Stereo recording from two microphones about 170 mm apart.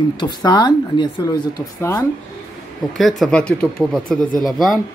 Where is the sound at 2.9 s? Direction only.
Centre (ahead or behind).